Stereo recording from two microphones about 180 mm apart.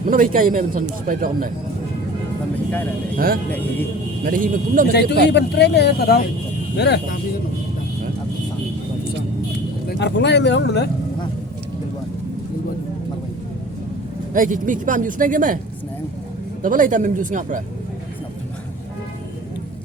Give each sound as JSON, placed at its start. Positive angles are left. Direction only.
{"t": 0.0, "sound": "a man's voice", "side_deg": -50}
{"t": 4.2, "sound": "a man's voice", "side_deg": -50}
{"t": 4.9, "sound": "speech", "side_deg": 70}
{"t": 9.9, "sound": "speech", "side_deg": 75}
{"t": 14.3, "sound": "a man's voice", "side_deg": -45}
{"t": 16.6, "sound": "a man's voice", "side_deg": -45}